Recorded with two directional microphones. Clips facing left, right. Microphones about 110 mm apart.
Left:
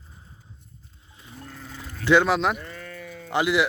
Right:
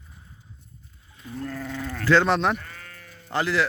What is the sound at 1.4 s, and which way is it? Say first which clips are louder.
Sheep: right 10 dB; 90° right.